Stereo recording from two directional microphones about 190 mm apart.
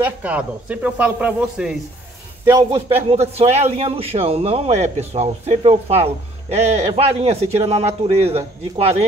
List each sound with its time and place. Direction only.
0.0 s speech: 5° right (ahead or behind)
2.4 s speech: 15° right (ahead or behind)
3.1 s a man's voice: 30° right (ahead or behind)